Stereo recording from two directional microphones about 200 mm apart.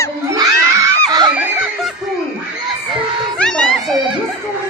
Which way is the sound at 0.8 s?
20° right (ahead or behind).